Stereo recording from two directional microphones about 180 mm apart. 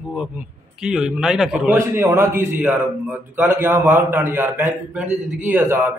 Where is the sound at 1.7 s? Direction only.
15° right (ahead or behind).